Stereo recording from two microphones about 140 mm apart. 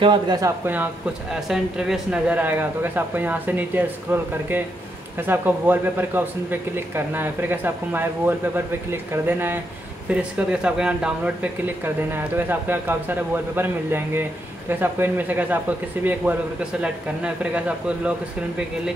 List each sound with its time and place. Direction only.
0.0 s speech: 30° right (ahead or behind)
1.3 s speech: 5° right (ahead or behind)